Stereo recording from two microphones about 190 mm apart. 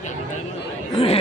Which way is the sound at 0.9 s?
30° left (ahead or behind).